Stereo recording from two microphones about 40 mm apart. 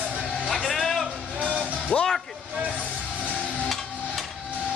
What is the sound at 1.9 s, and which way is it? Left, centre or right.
Vehicle, left.